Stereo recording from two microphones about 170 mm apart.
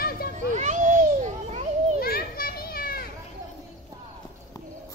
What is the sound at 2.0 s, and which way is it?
Children playing, 60° left (ahead or behind).